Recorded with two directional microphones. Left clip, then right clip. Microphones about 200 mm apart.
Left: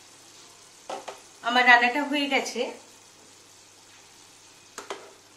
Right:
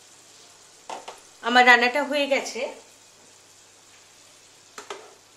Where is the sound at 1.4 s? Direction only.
55° right (ahead or behind).